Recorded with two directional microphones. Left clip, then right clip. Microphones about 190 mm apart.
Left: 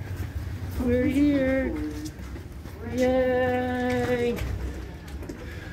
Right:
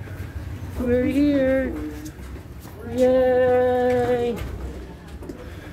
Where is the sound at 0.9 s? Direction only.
15° right (ahead or behind).